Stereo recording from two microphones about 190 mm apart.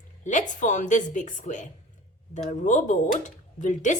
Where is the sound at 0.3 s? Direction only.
40° left (ahead or behind).